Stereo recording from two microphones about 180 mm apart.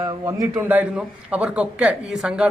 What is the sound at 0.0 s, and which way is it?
A man's voice, 20° right (ahead or behind).